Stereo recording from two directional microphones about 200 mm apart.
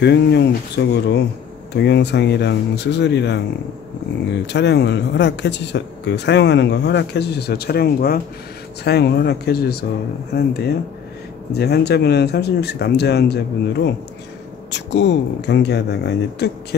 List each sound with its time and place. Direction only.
0.0 s speech: 60° left (ahead or behind)
4.5 s speech: 60° left (ahead or behind)